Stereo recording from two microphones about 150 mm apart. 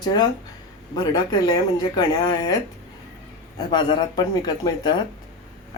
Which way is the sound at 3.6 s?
30° left (ahead or behind).